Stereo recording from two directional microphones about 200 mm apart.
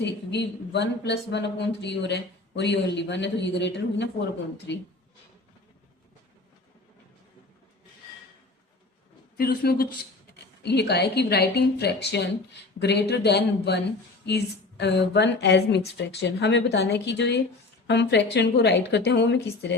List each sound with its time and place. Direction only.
0.0 s speech: 60° left (ahead or behind)
9.4 s speech: 50° left (ahead or behind)